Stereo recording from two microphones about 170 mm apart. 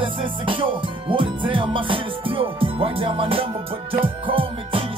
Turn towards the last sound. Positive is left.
turn(degrees=-30)  # may be behind; listen again after turning